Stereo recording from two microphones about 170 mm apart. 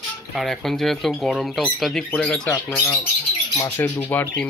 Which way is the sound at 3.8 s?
10° left (ahead or behind).